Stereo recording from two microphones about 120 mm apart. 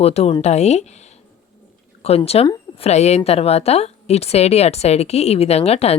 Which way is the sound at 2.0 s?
55° left (ahead or behind).